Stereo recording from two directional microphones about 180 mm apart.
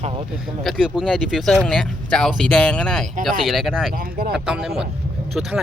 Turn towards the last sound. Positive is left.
turn(degrees=-5)  # may be behind; listen again after turning